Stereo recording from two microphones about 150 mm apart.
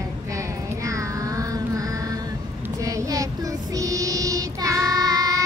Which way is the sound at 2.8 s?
20° right (ahead or behind).